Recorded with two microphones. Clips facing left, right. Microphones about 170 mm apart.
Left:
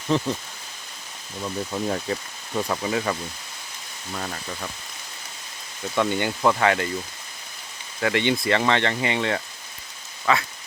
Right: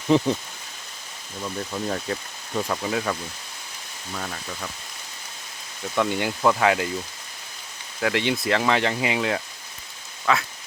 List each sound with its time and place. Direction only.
0.1 s speech: 15° right (ahead or behind)
1.4 s speech: 5° left (ahead or behind)
6.0 s speech: centre (ahead or behind)
8.0 s speech: centre (ahead or behind)